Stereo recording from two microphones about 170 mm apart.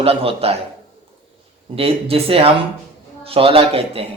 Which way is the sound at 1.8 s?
35° right (ahead or behind).